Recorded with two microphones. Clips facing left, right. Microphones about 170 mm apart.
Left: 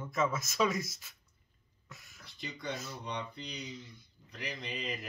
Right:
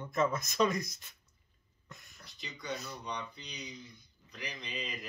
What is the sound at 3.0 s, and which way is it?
Mantra, 55° left (ahead or behind).